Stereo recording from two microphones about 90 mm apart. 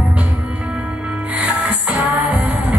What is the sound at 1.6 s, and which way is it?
Music, 20° right (ahead or behind).